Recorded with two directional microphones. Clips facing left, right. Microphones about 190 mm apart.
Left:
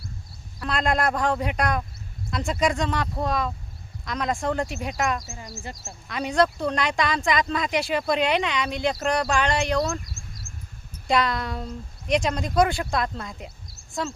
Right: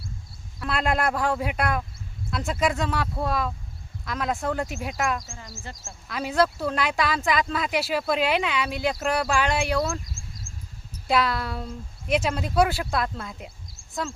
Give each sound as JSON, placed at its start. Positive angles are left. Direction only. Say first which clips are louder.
{"t": 0.6, "sound": "speech", "louder": "left 1 dB", "side_deg": -5}
{"t": 10.5, "sound": "a sound", "louder": "even", "side_deg": -50}
{"t": 11.1, "sound": "speech", "louder": "even", "side_deg": -5}